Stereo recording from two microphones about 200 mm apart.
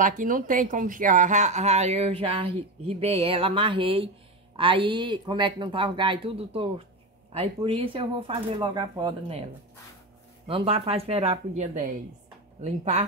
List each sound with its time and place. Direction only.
0.0 s speech: 40° right (ahead or behind)